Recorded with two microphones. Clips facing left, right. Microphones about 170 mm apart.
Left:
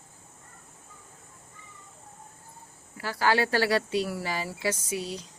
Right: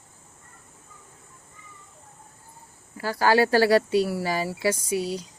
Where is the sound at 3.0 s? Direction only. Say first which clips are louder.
Right 5 dB; 40° right (ahead or behind).